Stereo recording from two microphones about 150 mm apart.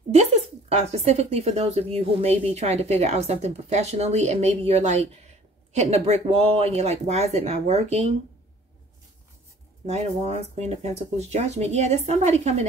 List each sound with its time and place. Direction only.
0.1 s speech: 45° right (ahead or behind)
9.8 s speech: 45° right (ahead or behind)